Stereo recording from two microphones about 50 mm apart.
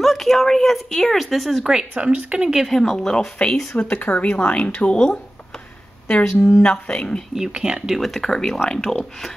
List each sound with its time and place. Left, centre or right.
0.0 s speech: centre
2.0 s speech: right
2.4 s speech: centre
2.7 s speech: centre
3.4 s speech: centre
3.9 s speech: left
4.9 s speech: centre
6.0 s speech: left
7.3 s speech: centre
7.9 s speech: centre